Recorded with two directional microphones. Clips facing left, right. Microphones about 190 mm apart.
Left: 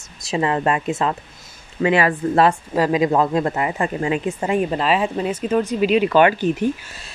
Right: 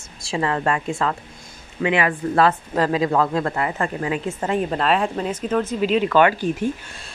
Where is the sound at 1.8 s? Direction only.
40° left (ahead or behind).